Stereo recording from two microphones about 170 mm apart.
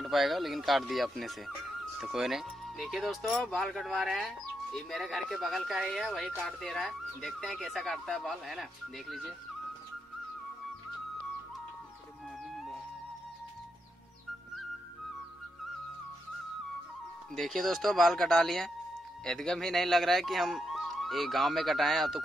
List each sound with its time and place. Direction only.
0.0 s speech: centre (ahead or behind)
17.4 s speech: centre (ahead or behind)